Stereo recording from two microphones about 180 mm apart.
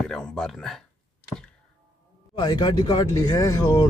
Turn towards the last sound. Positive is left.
turn(degrees=20)  # may be behind; listen again after turning